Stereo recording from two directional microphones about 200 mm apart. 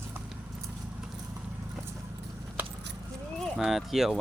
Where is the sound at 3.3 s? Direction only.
Centre (ahead or behind).